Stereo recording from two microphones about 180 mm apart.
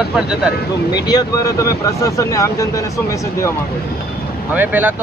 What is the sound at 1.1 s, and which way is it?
Speech, 20° left (ahead or behind).